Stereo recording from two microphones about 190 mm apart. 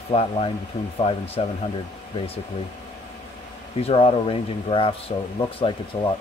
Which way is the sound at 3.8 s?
30° left (ahead or behind).